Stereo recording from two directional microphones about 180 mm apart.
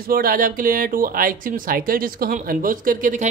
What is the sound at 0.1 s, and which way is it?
Speech, 55° right (ahead or behind).